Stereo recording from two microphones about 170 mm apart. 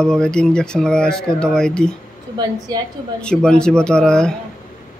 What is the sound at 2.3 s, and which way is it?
Speech, 25° right (ahead or behind).